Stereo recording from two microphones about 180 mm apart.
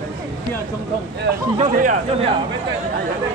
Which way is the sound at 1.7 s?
45° right (ahead or behind).